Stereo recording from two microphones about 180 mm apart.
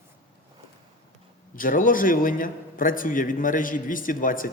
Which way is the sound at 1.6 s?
50° left (ahead or behind).